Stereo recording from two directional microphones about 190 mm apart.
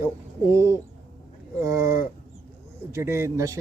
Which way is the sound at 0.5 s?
15° right (ahead or behind).